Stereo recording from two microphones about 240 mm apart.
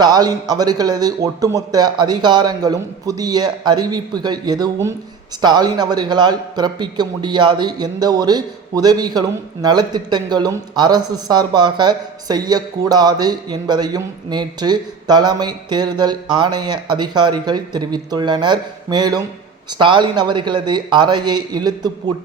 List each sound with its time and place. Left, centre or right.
0.0 s a man's voice: centre